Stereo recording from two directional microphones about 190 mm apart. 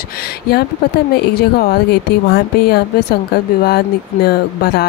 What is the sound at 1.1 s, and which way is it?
Speech, 55° left (ahead or behind).